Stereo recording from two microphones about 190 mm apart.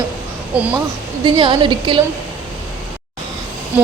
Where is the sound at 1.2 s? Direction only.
25° right (ahead or behind).